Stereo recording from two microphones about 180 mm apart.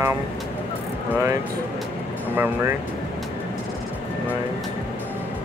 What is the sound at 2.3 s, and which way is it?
Speech, 10° right (ahead or behind).